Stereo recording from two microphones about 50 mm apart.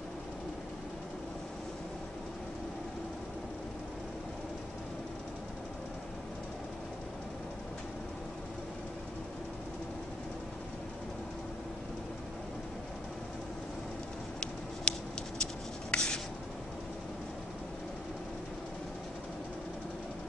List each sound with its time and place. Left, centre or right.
14.9 s patter: left
15.9 s writing: centre